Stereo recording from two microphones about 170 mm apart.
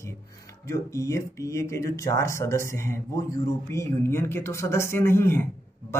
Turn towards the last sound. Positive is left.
turn(degrees=15)  # may be behind; listen again after turning